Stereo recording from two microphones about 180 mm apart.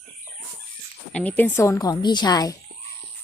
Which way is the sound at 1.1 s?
5° left (ahead or behind).